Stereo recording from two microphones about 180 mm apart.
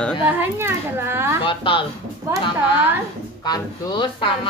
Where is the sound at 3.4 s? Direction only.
25° left (ahead or behind).